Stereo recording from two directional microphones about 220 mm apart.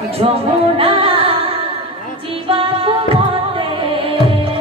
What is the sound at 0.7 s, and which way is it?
Music, 25° right (ahead or behind).